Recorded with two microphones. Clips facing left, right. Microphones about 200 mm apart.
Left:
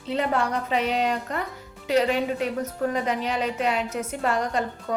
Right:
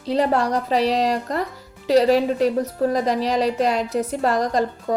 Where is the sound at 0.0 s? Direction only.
35° right (ahead or behind).